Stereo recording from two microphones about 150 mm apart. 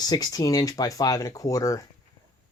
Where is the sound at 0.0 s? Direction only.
25° left (ahead or behind).